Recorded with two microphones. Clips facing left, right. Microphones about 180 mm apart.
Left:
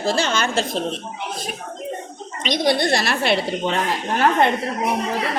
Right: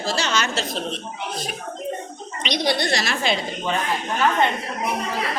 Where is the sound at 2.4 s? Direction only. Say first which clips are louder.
Left 4 dB; 50° left (ahead or behind).